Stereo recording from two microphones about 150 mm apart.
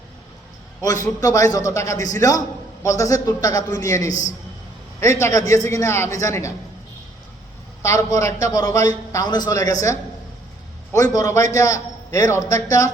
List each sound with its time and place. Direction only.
0.8 s a man's voice: 25° left (ahead or behind)
7.8 s a man's voice: 20° left (ahead or behind)
10.9 s a man's voice: 25° left (ahead or behind)